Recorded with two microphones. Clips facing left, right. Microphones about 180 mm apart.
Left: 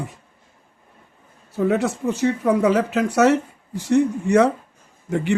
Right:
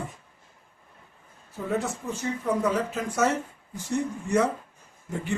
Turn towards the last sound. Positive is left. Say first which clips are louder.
# left 9 dB
turn(degrees=75)  # may be behind; listen again after turning